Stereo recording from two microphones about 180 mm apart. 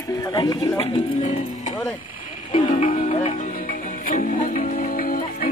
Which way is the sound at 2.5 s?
45° left (ahead or behind).